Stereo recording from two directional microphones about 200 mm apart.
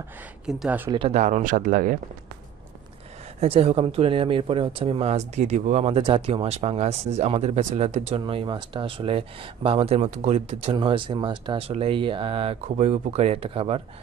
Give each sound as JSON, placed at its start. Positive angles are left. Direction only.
{"t": 0.5, "sound": "speech", "side_deg": -5}
{"t": 0.9, "sound": "speech", "side_deg": -30}
{"t": 3.3, "sound": "speech", "side_deg": -30}